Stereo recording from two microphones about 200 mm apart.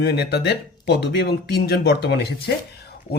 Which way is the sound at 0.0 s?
55° left (ahead or behind).